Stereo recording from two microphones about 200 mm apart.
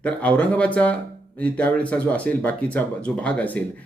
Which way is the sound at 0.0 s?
5° left (ahead or behind).